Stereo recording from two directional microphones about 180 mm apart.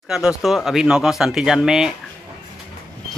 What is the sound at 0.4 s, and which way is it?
Speech, centre (ahead or behind).